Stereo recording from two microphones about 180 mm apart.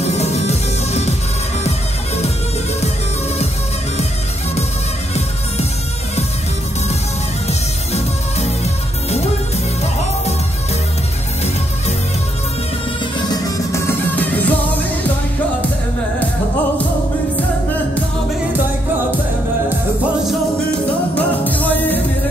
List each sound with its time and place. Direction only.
0.0 s music: 35° left (ahead or behind)
7.4 s music: 35° left (ahead or behind)
13.3 s music: 15° left (ahead or behind)
21.2 s music: 10° left (ahead or behind)